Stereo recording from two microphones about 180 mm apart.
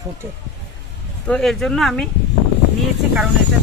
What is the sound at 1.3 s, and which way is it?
Speech, 5° left (ahead or behind).